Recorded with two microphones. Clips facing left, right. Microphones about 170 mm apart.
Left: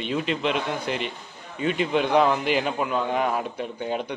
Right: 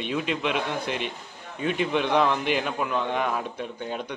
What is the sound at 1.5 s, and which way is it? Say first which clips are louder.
A man's voice: left 2 dB; centre (ahead or behind).